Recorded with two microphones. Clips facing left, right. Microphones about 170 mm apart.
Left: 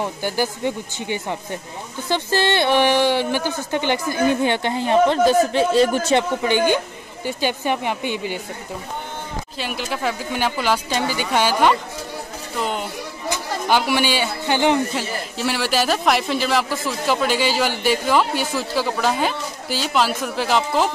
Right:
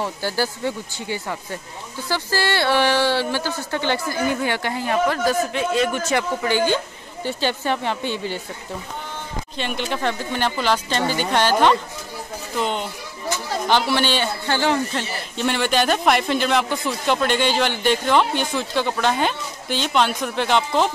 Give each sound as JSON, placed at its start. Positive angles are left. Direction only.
{"t": 0.0, "sound": "speech", "side_deg": 15}
{"t": 9.6, "sound": "speech", "side_deg": 5}
{"t": 15.0, "sound": "speech", "side_deg": 5}